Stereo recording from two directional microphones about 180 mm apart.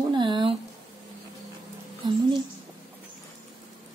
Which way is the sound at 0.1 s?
25° right (ahead or behind).